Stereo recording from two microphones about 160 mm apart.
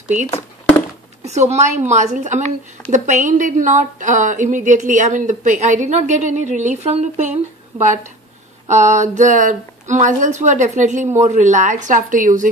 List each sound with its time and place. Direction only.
1.2 s a woman's voice: 45° right (ahead or behind)
8.6 s a woman's voice: 50° right (ahead or behind)